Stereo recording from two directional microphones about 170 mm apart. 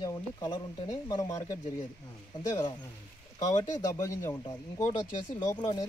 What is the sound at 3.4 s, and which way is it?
Speech, 25° left (ahead or behind).